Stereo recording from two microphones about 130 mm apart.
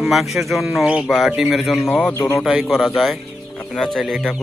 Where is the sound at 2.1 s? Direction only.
20° left (ahead or behind).